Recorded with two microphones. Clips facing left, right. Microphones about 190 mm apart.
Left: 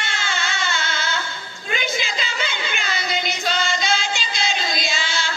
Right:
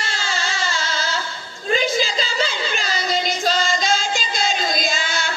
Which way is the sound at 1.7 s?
35° right (ahead or behind).